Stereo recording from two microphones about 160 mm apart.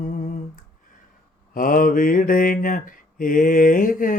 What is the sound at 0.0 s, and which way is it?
Humming, 55° left (ahead or behind).